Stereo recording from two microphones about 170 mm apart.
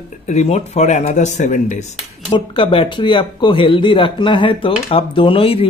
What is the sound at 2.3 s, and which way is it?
A man's voice, 30° left (ahead or behind).